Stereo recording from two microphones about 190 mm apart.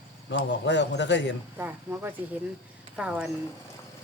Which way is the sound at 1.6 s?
10° right (ahead or behind).